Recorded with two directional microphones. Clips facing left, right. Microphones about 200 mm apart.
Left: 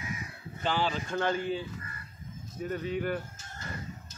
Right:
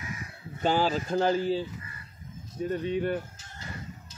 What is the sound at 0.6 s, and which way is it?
A man's voice, 45° right (ahead or behind).